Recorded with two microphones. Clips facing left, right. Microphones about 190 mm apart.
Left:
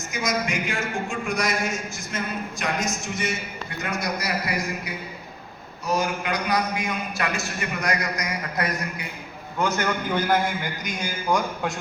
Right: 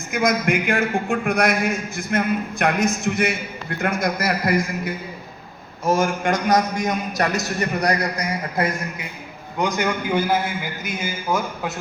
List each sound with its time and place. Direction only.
0.1 s a man's voice: 55° right (ahead or behind); by 9.0 s 25° right (ahead or behind)
9.6 s a man's voice: 15° right (ahead or behind)